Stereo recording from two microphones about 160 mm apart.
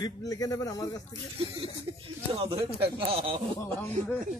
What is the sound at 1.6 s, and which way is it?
Speech, 35° right (ahead or behind).